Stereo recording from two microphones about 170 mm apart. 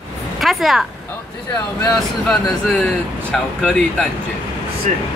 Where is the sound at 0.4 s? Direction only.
Centre (ahead or behind).